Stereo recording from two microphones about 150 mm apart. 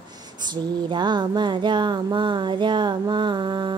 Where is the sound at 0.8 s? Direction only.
30° right (ahead or behind).